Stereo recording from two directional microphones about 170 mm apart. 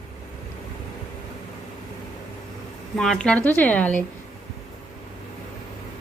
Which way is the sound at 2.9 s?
5° left (ahead or behind).